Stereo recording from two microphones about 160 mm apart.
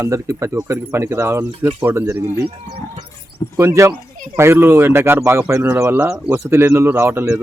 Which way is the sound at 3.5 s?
20° right (ahead or behind).